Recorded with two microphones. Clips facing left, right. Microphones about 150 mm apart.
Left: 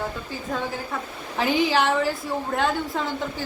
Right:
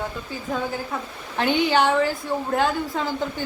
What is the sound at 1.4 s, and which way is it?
A woman's voice, centre (ahead or behind).